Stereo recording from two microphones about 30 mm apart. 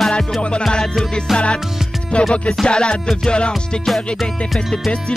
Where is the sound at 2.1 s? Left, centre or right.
Left.